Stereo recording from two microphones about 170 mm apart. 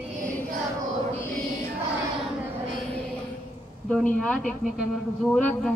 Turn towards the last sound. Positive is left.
turn(degrees=10)  # may be behind; listen again after turning